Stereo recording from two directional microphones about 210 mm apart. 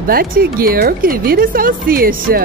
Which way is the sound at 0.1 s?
45° right (ahead or behind).